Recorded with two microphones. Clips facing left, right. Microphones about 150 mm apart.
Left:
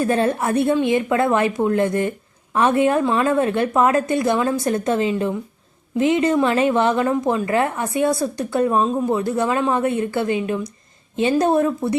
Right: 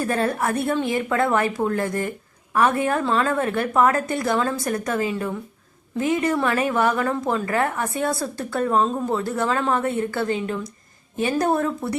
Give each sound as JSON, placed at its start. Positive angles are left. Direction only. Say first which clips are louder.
{"t": 0.0, "sound": "a woman's voice", "louder": "left 4 dB", "side_deg": 20}